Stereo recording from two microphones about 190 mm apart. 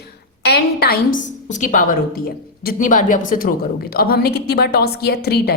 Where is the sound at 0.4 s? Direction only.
60° left (ahead or behind).